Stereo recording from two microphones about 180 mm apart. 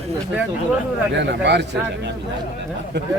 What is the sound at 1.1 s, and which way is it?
Speech, 75° right (ahead or behind).